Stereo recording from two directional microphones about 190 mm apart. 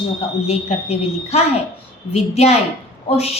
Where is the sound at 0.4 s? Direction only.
35° left (ahead or behind).